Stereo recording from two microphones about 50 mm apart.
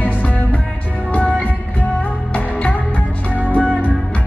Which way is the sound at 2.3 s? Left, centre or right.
Left.